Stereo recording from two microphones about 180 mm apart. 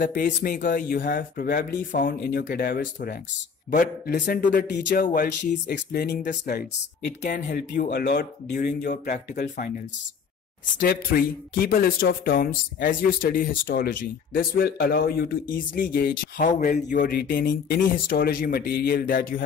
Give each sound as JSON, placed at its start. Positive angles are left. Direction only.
{"t": 0.0, "sound": "speech", "side_deg": 50}
{"t": 1.9, "sound": "speech", "side_deg": 50}
{"t": 4.7, "sound": "speech", "side_deg": 70}
{"t": 5.0, "sound": "speech", "side_deg": 50}
{"t": 7.3, "sound": "speech", "side_deg": 45}
{"t": 10.8, "sound": "speech", "side_deg": 55}